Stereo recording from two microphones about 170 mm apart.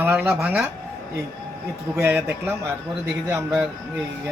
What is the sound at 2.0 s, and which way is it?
Speech, 15° right (ahead or behind).